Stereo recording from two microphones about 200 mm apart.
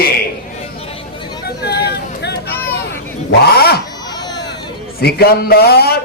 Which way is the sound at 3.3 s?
55° left (ahead or behind).